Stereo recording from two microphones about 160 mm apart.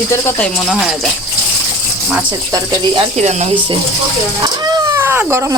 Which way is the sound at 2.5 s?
25° right (ahead or behind).